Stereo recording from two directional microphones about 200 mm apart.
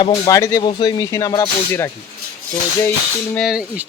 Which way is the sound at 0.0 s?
20° left (ahead or behind).